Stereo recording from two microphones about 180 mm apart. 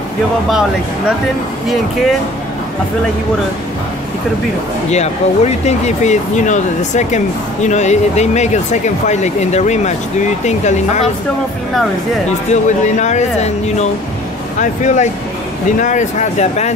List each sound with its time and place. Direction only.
0.5 s speech: 5° right (ahead or behind)
4.9 s speech: 40° left (ahead or behind)
12.4 s speech: 40° left (ahead or behind)